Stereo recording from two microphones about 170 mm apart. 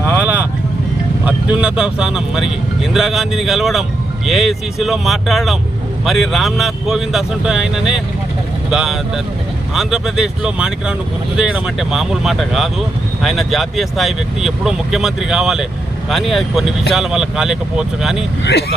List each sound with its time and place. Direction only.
0.0 s vehicle: 10° right (ahead or behind)
1.2 s speech: 5° right (ahead or behind)